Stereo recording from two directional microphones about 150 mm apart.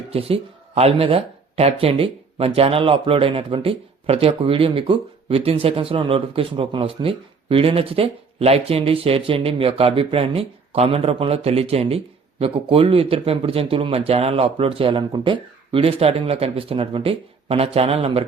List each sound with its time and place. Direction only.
0.1 s speech: 40° right (ahead or behind)